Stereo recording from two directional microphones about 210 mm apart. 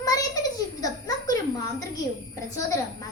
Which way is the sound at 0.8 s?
15° left (ahead or behind).